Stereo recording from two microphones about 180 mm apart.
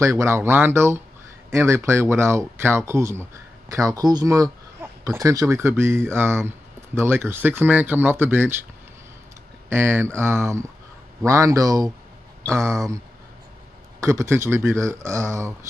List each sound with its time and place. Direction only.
0.0 s speech: 15° right (ahead or behind)
9.7 s speech: 15° right (ahead or behind)
14.0 s speech: 15° right (ahead or behind)